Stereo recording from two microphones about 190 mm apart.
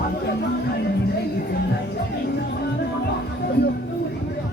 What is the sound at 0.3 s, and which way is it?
Music, 60° left (ahead or behind).